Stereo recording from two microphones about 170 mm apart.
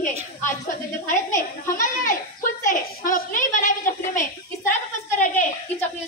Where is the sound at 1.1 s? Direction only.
50° left (ahead or behind).